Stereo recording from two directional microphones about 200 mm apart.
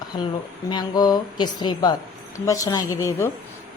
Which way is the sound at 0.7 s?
20° left (ahead or behind).